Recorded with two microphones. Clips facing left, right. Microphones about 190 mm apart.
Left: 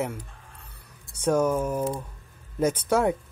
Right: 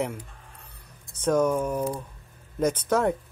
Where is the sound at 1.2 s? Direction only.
10° left (ahead or behind).